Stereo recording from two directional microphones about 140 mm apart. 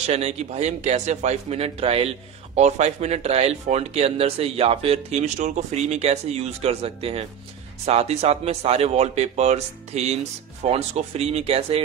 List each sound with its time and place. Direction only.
0.0 s a man's voice: 50° right (ahead or behind)